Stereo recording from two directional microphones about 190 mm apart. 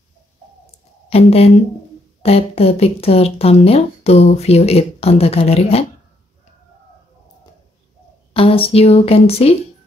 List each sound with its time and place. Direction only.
1.1 s speech: 30° left (ahead or behind)
8.3 s speech: 30° left (ahead or behind)